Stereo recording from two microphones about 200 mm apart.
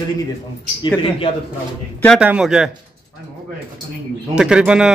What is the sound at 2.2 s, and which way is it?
Speech, 5° right (ahead or behind).